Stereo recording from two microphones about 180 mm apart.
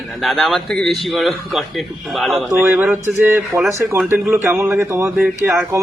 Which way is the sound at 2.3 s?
10° right (ahead or behind).